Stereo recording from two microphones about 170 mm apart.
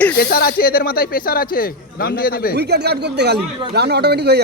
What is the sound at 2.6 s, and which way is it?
Speech, 75° right (ahead or behind).